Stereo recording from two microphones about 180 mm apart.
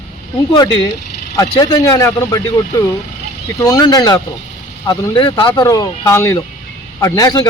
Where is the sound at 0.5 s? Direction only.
25° left (ahead or behind).